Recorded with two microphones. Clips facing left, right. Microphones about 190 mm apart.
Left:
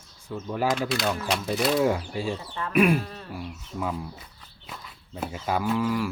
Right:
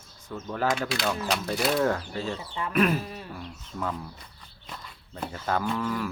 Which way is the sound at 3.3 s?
10° left (ahead or behind).